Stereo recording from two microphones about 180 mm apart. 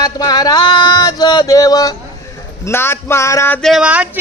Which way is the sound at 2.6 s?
15° left (ahead or behind).